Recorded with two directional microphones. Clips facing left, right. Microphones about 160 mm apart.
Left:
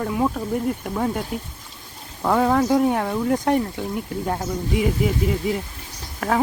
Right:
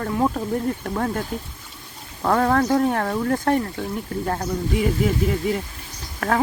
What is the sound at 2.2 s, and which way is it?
Speech, 5° left (ahead or behind).